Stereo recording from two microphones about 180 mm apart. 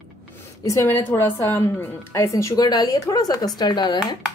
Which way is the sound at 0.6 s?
15° left (ahead or behind).